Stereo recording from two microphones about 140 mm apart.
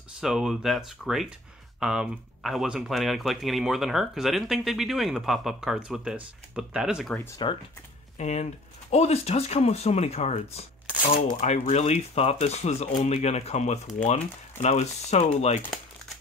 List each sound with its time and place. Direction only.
0.2 s speech: 5° right (ahead or behind)
7.4 s speech: 35° left (ahead or behind)
8.2 s speech: 55° left (ahead or behind)